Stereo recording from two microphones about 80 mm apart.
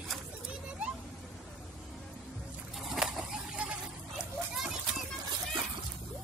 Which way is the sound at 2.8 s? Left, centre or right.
Centre.